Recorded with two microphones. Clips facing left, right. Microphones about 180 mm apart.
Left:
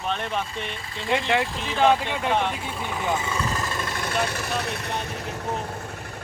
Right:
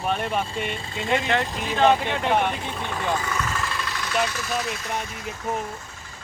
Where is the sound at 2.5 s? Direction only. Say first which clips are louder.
Right 1 dB; 5° left (ahead or behind).